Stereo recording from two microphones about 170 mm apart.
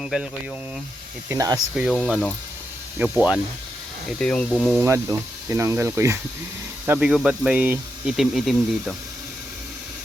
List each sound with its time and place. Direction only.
0.0 s speech: centre (ahead or behind)
1.3 s speech: 20° right (ahead or behind)
1.7 s speech: 10° right (ahead or behind)
3.0 s speech: 5° right (ahead or behind)
4.2 s speech: 5° left (ahead or behind)
4.8 s speech: 15° right (ahead or behind); by 9.0 s centre (ahead or behind)